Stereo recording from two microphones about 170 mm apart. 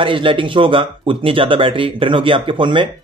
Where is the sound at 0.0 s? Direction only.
30° right (ahead or behind).